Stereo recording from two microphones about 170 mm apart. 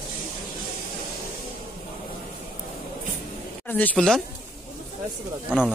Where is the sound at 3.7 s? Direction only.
5° left (ahead or behind).